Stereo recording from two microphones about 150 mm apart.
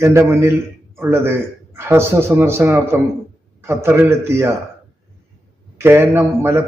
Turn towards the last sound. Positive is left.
turn(degrees=-15)  # may be behind; listen again after turning